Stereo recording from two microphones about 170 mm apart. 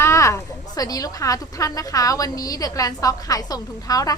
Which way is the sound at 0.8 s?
20° left (ahead or behind).